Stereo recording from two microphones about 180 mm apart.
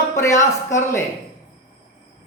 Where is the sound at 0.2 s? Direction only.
15° left (ahead or behind).